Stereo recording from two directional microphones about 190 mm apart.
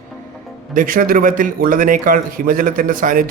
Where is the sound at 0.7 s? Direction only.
45° right (ahead or behind).